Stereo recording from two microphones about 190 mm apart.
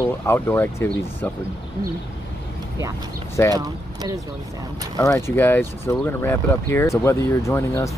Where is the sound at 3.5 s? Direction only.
20° right (ahead or behind).